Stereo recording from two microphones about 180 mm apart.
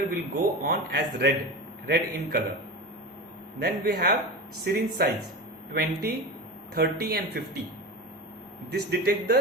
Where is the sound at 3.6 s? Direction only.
60° right (ahead or behind).